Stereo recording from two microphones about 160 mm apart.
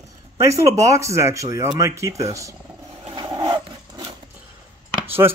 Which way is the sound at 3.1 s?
25° right (ahead or behind).